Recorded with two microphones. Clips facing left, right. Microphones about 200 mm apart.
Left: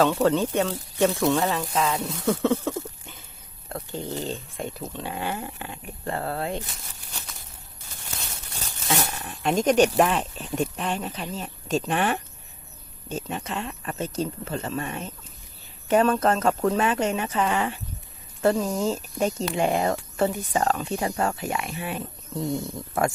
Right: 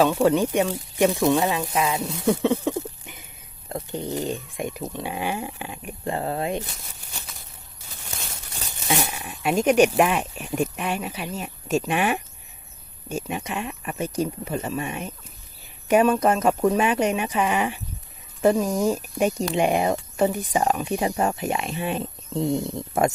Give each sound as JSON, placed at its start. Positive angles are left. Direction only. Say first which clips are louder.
{"t": 0.0, "sound": "speech", "louder": "right 2 dB", "side_deg": -10}
{"t": 2.2, "sound": "a sound", "louder": "right 2 dB", "side_deg": -15}
{"t": 3.7, "sound": "speech", "louder": "right 3 dB", "side_deg": -20}
{"t": 8.9, "sound": "speech", "louder": "right 2 dB", "side_deg": -10}